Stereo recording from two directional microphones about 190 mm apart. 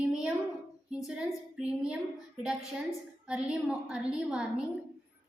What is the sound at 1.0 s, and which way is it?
A woman's voice, 5° right (ahead or behind).